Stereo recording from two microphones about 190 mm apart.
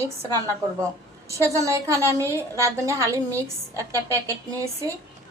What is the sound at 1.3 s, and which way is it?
A woman's voice, 15° right (ahead or behind).